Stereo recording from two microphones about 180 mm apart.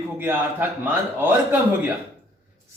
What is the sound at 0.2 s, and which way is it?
A man's voice, 10° right (ahead or behind).